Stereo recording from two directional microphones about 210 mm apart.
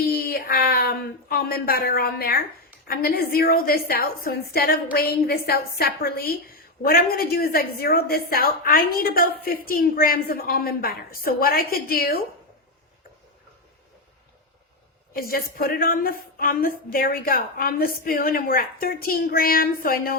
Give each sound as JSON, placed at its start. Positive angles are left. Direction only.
{"t": 0.0, "sound": "a sound", "side_deg": 45}
{"t": 2.8, "sound": "a woman's voice", "side_deg": 45}
{"t": 15.1, "sound": "a woman's voice", "side_deg": 45}